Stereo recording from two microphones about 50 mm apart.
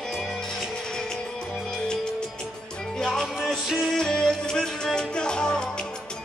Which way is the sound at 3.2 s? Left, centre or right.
Centre.